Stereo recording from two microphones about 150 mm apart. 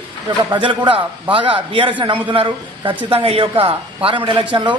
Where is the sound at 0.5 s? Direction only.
30° right (ahead or behind).